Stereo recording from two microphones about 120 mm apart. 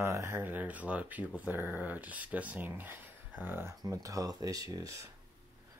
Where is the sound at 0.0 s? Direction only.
20° right (ahead or behind).